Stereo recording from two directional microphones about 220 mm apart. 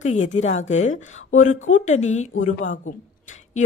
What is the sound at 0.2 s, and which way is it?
A woman's voice, 30° left (ahead or behind).